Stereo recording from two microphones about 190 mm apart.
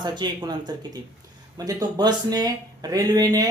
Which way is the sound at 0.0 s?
25° right (ahead or behind).